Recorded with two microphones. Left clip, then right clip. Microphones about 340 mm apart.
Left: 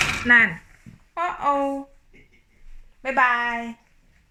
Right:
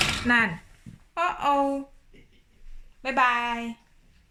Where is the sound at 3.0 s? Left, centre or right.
Centre.